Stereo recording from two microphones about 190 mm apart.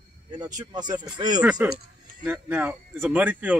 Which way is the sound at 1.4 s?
5° right (ahead or behind).